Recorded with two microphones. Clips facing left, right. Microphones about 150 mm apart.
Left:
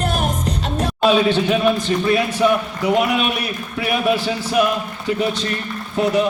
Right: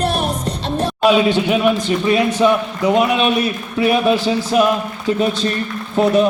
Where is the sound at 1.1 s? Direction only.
15° right (ahead or behind).